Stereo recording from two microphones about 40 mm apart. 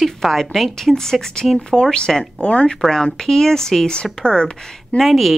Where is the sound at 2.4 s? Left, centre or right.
Left.